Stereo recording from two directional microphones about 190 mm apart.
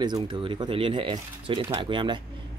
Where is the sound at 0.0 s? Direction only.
25° right (ahead or behind).